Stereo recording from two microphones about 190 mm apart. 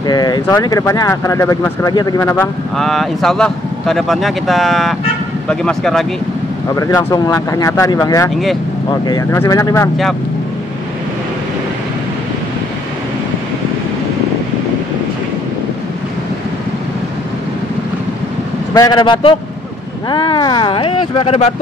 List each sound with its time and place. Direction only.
0.0 s speech: 20° left (ahead or behind); by 6.0 s 5° left (ahead or behind)
6.7 s speech: 20° left (ahead or behind)
18.7 s speech: 20° left (ahead or behind)